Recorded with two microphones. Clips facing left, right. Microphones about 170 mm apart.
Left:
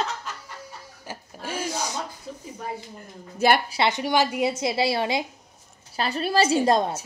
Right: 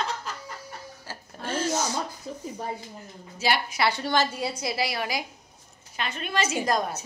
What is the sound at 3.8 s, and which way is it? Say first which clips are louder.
A woman's voice: left 2 dB; 20° left (ahead or behind).